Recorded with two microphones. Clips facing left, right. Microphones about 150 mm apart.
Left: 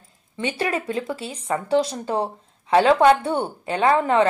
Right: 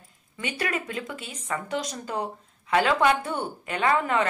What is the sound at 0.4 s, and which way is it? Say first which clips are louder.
A woman's voice: left 5 dB; 30° left (ahead or behind).